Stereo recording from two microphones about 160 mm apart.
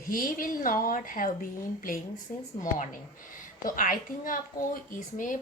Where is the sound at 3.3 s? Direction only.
60° left (ahead or behind).